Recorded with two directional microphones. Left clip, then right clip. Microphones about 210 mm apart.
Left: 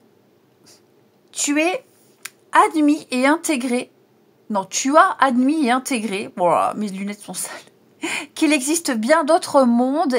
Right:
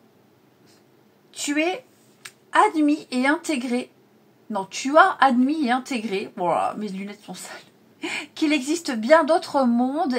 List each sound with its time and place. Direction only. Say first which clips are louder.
1.3 s a woman's voice: left 4 dB; 50° left (ahead or behind)